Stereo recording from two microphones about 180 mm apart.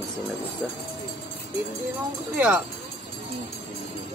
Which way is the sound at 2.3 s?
10° right (ahead or behind).